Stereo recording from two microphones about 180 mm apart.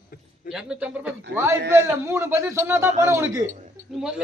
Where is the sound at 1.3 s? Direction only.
15° right (ahead or behind).